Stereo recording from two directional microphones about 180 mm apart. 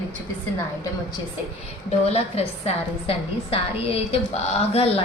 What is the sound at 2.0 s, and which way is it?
A woman's voice, 35° left (ahead or behind).